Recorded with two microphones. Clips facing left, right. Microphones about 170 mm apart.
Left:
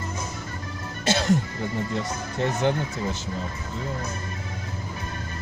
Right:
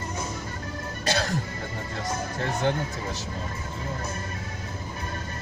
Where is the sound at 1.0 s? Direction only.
20° left (ahead or behind).